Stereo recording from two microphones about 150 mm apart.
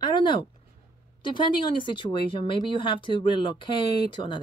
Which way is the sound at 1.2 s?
35° left (ahead or behind).